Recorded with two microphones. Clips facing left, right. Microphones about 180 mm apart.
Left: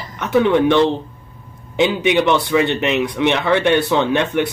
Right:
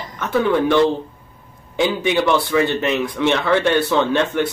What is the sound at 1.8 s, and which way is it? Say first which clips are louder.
A man's voice: left 2 dB; 20° left (ahead or behind).